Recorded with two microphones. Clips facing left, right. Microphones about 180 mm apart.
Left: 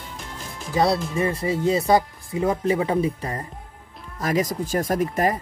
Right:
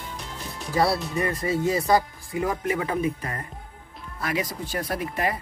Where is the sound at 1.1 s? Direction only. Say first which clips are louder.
Left 2 dB; 25° left (ahead or behind).